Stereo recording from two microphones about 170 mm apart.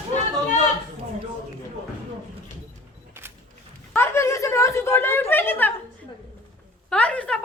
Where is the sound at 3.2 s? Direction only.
15° right (ahead or behind).